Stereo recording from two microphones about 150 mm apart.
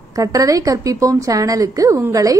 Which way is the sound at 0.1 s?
25° right (ahead or behind).